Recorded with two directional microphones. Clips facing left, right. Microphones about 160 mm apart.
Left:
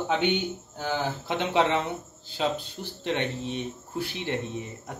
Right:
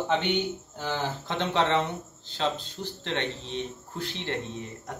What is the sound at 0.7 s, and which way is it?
Speech, 10° left (ahead or behind).